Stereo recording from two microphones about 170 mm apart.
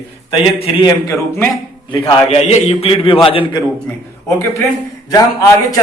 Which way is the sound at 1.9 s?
30° left (ahead or behind).